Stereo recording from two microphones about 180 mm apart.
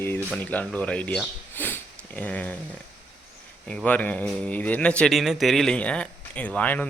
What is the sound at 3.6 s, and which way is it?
A man's voice, 5° left (ahead or behind).